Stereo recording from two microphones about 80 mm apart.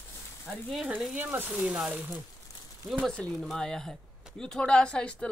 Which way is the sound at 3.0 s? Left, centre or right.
Centre.